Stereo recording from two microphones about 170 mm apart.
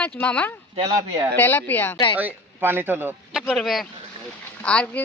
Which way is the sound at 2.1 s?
10° right (ahead or behind).